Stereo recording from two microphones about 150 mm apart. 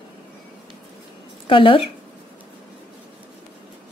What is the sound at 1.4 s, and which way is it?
Speech, 35° left (ahead or behind).